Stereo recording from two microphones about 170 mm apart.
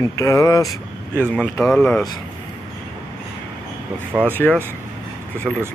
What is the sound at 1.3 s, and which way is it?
Speech, 5° left (ahead or behind).